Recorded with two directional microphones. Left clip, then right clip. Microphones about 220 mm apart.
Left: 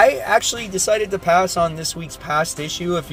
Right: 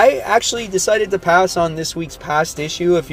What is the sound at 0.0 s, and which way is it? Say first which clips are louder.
Speech: right 2 dB; 20° right (ahead or behind).